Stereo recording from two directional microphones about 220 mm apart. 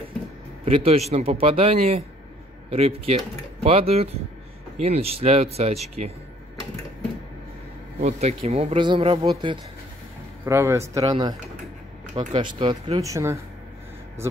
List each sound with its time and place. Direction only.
0.7 s a man's voice: 25° right (ahead or behind)
8.0 s a man's voice: 30° right (ahead or behind)
10.4 s a man's voice: 10° right (ahead or behind)